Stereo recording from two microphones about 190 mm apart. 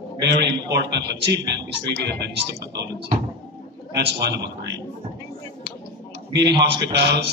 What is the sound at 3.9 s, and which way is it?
Speech, 60° right (ahead or behind).